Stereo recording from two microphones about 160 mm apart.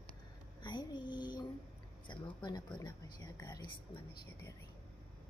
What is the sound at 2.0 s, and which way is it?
A woman's voice, 30° left (ahead or behind).